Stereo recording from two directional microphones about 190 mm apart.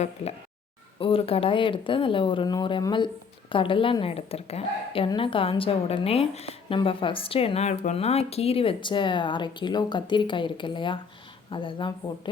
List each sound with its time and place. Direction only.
0.9 s a woman's voice: 30° left (ahead or behind)